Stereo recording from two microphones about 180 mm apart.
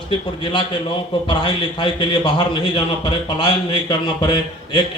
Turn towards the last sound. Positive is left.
turn(degrees=25)  # may be behind; listen again after turning